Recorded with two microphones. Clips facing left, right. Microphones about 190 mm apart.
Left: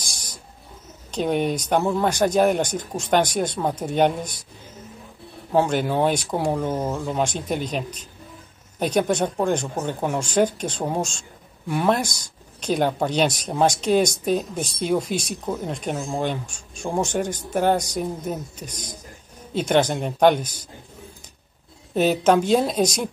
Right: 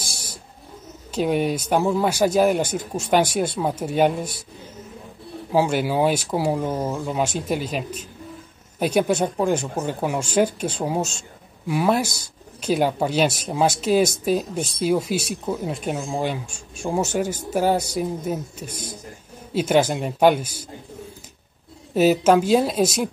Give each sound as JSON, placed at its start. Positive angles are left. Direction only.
{"t": 0.0, "sound": "owl", "side_deg": -5}
{"t": 1.1, "sound": "speech", "side_deg": -5}
{"t": 5.5, "sound": "speech", "side_deg": -5}
{"t": 21.9, "sound": "speech", "side_deg": -5}